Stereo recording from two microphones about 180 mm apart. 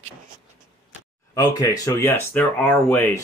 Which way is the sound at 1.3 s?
20° left (ahead or behind).